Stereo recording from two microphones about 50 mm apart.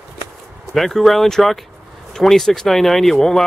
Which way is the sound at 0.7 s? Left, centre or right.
Centre.